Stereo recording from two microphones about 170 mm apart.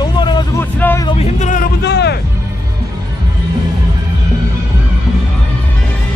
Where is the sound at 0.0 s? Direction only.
25° left (ahead or behind).